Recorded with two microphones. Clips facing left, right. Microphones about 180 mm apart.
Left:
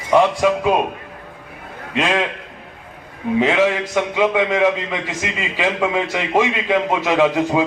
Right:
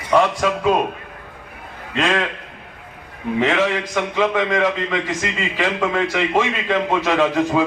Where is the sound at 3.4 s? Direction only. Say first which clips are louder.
Left 2 dB; 15° left (ahead or behind).